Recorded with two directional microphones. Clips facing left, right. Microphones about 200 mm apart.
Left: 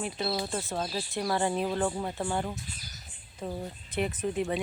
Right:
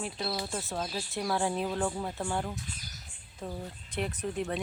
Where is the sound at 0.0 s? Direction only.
Centre (ahead or behind).